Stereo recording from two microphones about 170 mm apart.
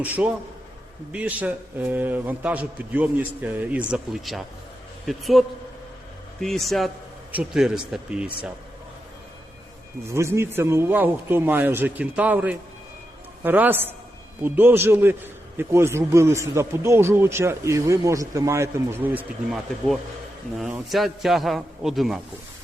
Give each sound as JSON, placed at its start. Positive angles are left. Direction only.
{"t": 0.0, "sound": "a man's voice", "side_deg": -10}
{"t": 10.1, "sound": "a man's voice", "side_deg": -15}